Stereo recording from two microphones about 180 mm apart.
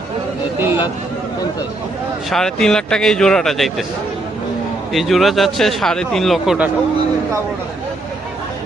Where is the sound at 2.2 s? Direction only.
Centre (ahead or behind).